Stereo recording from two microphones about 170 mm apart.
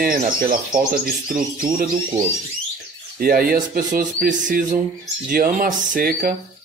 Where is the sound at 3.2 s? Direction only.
60° right (ahead or behind).